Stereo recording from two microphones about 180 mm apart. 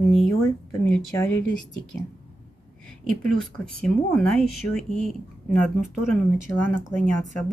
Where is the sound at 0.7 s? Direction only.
10° left (ahead or behind).